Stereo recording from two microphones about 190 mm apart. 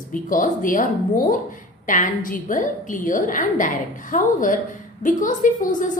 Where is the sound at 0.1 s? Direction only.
45° left (ahead or behind).